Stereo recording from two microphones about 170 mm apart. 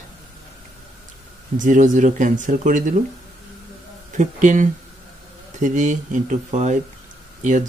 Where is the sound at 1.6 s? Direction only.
50° right (ahead or behind).